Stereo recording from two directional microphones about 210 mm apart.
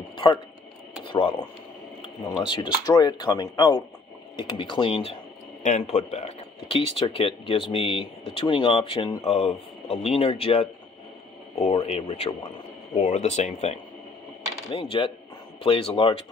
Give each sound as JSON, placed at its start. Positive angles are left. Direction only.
{"t": 1.0, "sound": "speech", "side_deg": 25}